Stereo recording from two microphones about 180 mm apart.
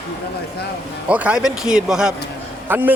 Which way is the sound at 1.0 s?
5° right (ahead or behind).